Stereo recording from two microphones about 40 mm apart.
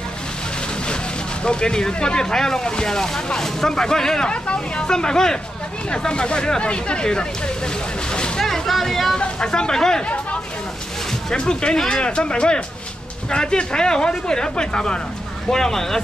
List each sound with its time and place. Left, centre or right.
1.4 s speech: left
8.4 s a sound: centre
9.2 s speech: left
11.3 s speech: left
15.5 s speech: centre